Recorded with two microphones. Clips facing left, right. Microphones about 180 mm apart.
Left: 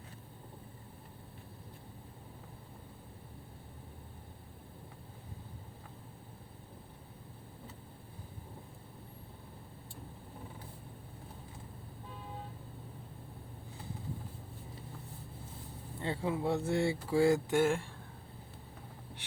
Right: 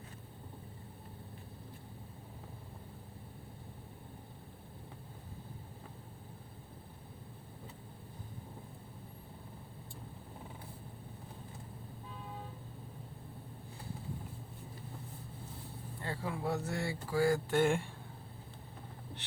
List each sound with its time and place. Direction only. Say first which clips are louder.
16.0 s speech: left 5 dB; 25° left (ahead or behind)
17.6 s speech: even; centre (ahead or behind)